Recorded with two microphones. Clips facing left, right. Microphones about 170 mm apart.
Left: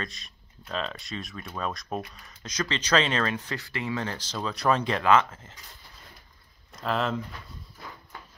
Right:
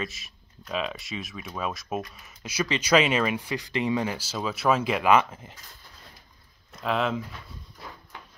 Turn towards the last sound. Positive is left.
turn(degrees=0)  # may be behind; listen again after turning